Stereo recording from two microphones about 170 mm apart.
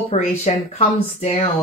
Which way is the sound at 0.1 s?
40° left (ahead or behind).